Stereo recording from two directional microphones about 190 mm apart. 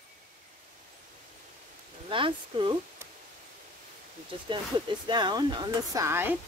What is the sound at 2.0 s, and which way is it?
Speech, 25° right (ahead or behind).